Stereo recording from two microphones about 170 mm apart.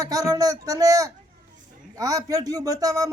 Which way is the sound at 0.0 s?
20° right (ahead or behind).